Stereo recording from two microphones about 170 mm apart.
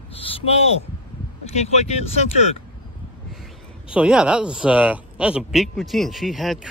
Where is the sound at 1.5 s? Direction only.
40° left (ahead or behind).